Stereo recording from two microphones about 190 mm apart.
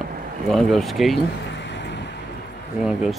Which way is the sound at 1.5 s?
65° left (ahead or behind).